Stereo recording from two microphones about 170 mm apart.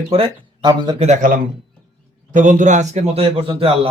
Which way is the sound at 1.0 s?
45° right (ahead or behind).